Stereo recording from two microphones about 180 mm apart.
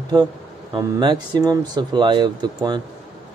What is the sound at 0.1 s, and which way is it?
Speech, 20° right (ahead or behind).